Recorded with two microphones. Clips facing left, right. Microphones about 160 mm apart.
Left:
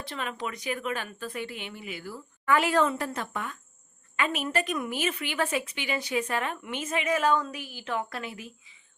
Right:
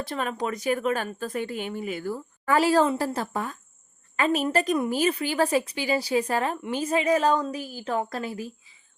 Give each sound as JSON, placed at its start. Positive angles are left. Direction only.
{"t": 0.0, "sound": "a woman's voice", "side_deg": -40}